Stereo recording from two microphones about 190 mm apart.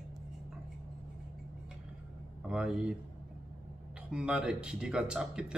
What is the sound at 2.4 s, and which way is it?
Speech, 5° right (ahead or behind).